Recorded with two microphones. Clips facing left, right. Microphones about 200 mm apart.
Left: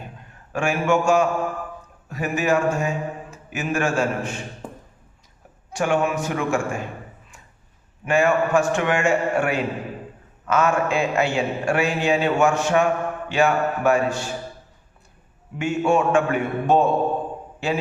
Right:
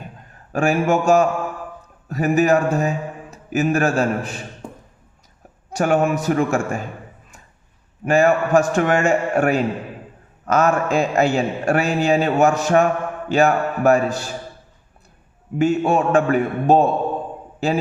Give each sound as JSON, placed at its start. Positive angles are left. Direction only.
{"t": 0.5, "sound": "a man's voice", "side_deg": -40}
{"t": 5.7, "sound": "a man's voice", "side_deg": -40}
{"t": 8.0, "sound": "a man's voice", "side_deg": -40}
{"t": 15.5, "sound": "a man's voice", "side_deg": -35}